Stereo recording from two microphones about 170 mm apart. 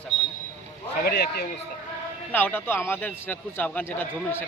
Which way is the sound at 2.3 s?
10° left (ahead or behind).